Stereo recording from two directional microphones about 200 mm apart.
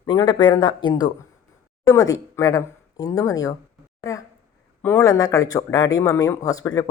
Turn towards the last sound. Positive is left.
turn(degrees=20)  # may be behind; listen again after turning